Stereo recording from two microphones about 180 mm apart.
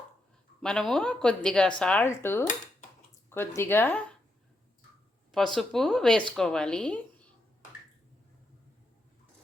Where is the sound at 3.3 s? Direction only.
15° left (ahead or behind).